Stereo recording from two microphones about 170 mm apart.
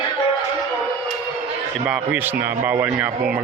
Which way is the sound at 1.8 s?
5° right (ahead or behind).